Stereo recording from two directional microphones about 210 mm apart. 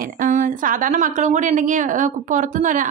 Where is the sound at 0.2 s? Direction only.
40° right (ahead or behind).